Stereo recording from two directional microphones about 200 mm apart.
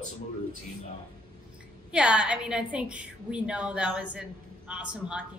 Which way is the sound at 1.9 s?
5° right (ahead or behind).